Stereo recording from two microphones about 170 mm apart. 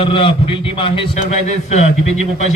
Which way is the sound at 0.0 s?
30° left (ahead or behind).